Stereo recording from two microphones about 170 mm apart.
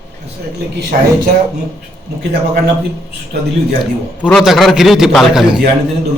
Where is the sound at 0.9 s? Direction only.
55° right (ahead or behind).